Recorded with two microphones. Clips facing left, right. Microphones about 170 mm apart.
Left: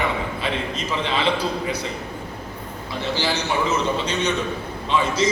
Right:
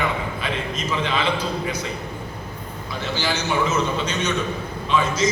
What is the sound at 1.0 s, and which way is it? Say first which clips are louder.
Speech: left 2 dB; 30° left (ahead or behind).